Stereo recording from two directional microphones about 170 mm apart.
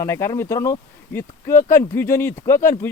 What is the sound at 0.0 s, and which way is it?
Speech, 15° left (ahead or behind).